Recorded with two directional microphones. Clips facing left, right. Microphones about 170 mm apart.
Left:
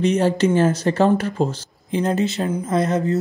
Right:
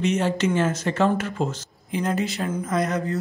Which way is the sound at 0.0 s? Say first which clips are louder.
Left 5 dB; 35° left (ahead or behind).